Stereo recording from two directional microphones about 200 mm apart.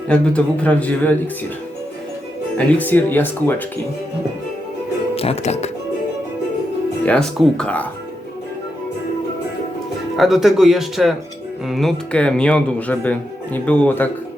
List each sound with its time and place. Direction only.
0.1 s a man's voice: 5° left (ahead or behind)
2.6 s a man's voice: 10° left (ahead or behind)
5.1 s speech: 30° left (ahead or behind)
7.0 s speech: 5° left (ahead or behind)
10.2 s speech: centre (ahead or behind)